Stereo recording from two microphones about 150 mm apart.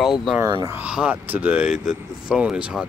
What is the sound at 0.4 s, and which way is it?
Speech, 25° right (ahead or behind).